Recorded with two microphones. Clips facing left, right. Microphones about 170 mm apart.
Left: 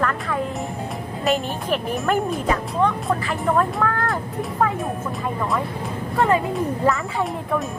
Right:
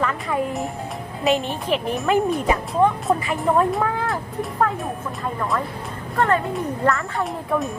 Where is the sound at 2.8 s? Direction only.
20° right (ahead or behind).